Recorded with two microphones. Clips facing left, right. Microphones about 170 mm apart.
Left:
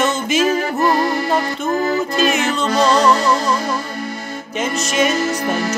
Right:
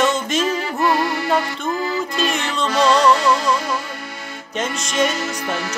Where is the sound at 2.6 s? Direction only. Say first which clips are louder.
Even; 40° left (ahead or behind).